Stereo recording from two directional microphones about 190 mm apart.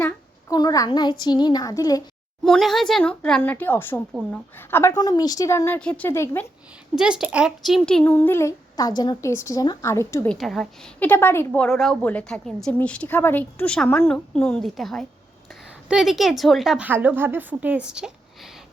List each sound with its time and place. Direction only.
0.5 s a child's voice: 20° left (ahead or behind)
2.4 s a woman's voice: centre (ahead or behind)
6.9 s speech: 5° right (ahead or behind); by 10.3 s 15° left (ahead or behind)
10.3 s a woman's voice: centre (ahead or behind)